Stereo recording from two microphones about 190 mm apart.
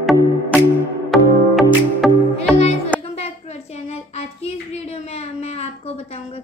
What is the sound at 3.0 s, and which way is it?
Hands, 35° left (ahead or behind).